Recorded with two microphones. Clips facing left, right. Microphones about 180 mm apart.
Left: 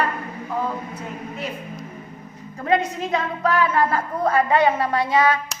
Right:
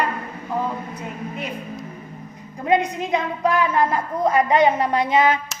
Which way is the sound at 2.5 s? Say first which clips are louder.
Right 1 dB; 15° right (ahead or behind).